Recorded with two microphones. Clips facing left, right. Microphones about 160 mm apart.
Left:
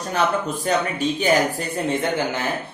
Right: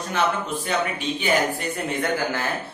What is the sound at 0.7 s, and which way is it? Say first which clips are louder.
Speech: left 4 dB; 40° left (ahead or behind).